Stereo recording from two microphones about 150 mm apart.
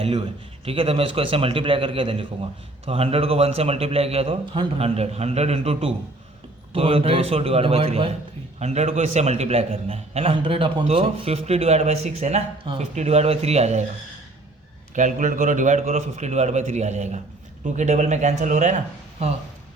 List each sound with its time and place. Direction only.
0.0 s a man's voice: 40° right (ahead or behind)
14.9 s a man's voice: 60° right (ahead or behind)